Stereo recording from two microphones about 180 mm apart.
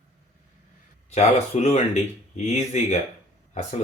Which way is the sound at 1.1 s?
40° left (ahead or behind).